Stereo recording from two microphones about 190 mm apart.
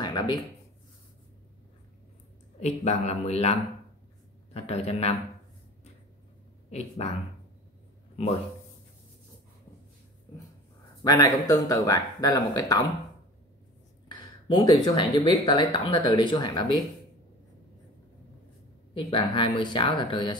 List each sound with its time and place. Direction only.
0.0 s a sound: 20° left (ahead or behind)
2.6 s speech: 35° left (ahead or behind)
4.6 s speech: 35° left (ahead or behind)
6.7 s speech: 35° left (ahead or behind)
11.1 s speech: 15° left (ahead or behind)
14.5 s speech: 20° left (ahead or behind)
18.9 s speech: 25° left (ahead or behind)